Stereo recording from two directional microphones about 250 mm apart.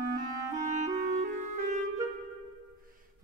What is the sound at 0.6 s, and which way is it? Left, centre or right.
Clarinet, right.